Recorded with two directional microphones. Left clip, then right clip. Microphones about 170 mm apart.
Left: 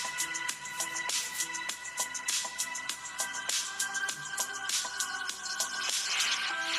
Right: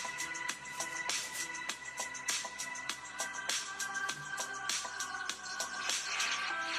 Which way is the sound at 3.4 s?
15° left (ahead or behind).